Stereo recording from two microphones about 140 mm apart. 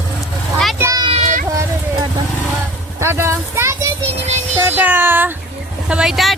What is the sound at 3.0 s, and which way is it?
Speech, 15° right (ahead or behind).